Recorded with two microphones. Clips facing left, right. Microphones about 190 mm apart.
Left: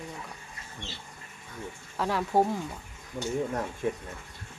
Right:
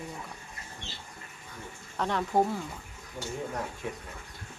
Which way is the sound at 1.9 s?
5° left (ahead or behind).